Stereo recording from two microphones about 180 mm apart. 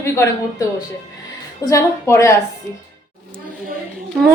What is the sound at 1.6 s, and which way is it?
Speech, 15° left (ahead or behind).